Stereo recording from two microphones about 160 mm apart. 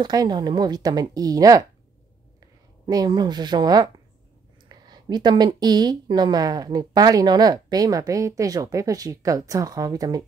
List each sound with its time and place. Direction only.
0.0 s speech: 25° right (ahead or behind)